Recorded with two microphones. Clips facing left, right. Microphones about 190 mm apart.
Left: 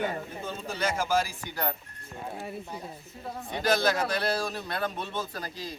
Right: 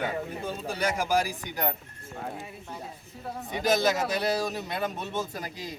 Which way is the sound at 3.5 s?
15° right (ahead or behind).